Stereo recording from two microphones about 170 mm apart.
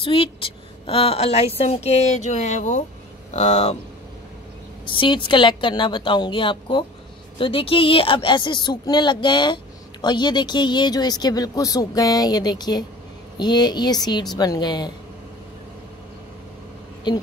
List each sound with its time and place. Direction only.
0.0 s a woman's voice: 30° left (ahead or behind)
4.8 s speech: 30° left (ahead or behind)